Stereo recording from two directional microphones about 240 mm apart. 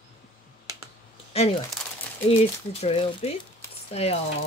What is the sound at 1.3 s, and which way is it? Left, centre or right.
Speech, left.